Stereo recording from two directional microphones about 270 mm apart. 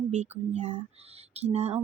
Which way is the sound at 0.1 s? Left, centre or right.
Right.